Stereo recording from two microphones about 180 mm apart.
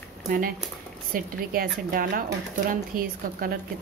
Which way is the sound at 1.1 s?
50° right (ahead or behind).